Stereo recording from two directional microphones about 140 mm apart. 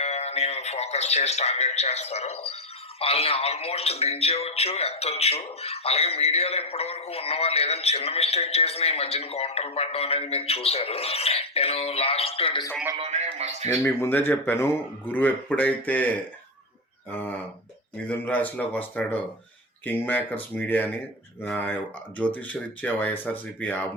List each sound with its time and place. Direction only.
0.0 s a man's voice: 50° left (ahead or behind)
13.0 s speech: 50° right (ahead or behind)
13.8 s speech: 15° left (ahead or behind)
18.1 s speech: 10° left (ahead or behind)